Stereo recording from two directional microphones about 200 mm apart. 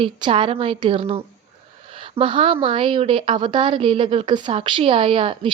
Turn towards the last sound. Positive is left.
turn(degrees=-25)  # may be behind; listen again after turning